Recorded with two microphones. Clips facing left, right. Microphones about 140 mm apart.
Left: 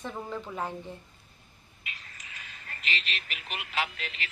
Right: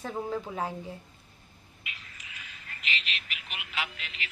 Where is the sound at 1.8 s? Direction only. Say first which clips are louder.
Left 1 dB; 40° left (ahead or behind).